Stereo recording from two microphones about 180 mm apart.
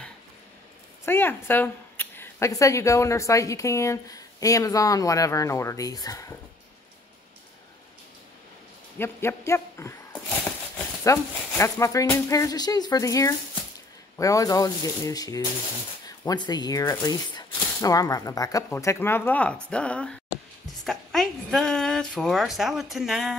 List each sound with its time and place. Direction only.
1.0 s speech: 10° left (ahead or behind)
8.9 s a woman's voice: 15° left (ahead or behind); by 23.3 s centre (ahead or behind)